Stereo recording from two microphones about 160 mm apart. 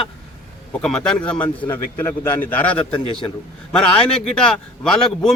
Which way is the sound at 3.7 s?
5° left (ahead or behind).